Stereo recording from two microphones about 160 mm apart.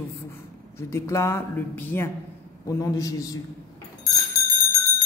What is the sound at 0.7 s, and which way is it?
A man's voice, 15° left (ahead or behind).